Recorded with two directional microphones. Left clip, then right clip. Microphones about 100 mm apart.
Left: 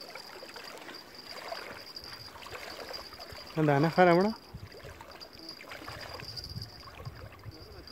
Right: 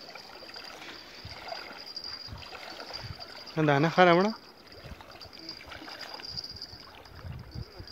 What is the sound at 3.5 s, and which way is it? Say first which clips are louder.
Speech: right 2 dB; 10° right (ahead or behind).